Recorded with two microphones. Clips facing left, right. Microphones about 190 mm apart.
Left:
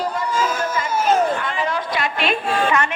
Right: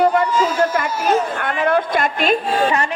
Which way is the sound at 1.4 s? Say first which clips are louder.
Right 6 dB; 60° right (ahead or behind).